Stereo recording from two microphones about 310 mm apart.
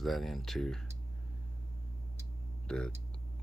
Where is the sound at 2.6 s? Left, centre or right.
Centre.